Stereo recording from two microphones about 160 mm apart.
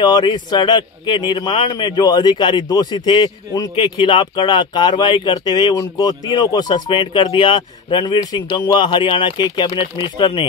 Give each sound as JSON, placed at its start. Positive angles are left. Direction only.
{"t": 0.0, "sound": "speech", "side_deg": 25}